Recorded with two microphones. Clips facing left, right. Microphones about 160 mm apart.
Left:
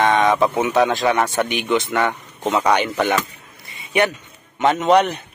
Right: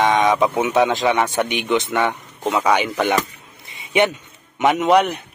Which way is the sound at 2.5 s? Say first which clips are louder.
Even; 5° right (ahead or behind).